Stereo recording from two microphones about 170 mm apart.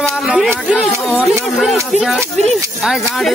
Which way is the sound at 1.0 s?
Centre (ahead or behind).